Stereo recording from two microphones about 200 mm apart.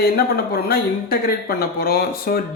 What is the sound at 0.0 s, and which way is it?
Speech, 50° left (ahead or behind).